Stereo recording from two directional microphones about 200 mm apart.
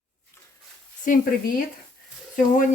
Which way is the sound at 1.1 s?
40° left (ahead or behind).